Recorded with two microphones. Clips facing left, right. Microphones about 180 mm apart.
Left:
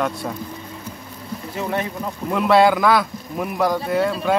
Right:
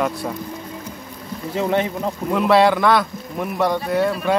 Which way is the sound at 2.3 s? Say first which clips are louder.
Even; centre (ahead or behind).